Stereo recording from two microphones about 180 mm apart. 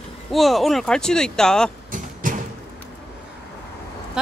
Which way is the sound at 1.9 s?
45° right (ahead or behind).